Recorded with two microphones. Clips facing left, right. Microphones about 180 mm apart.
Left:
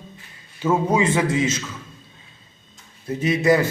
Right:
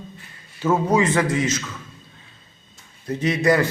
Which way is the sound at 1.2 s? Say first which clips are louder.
Left 1 dB; 25° left (ahead or behind).